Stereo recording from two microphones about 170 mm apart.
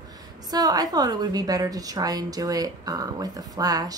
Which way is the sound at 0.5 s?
20° right (ahead or behind).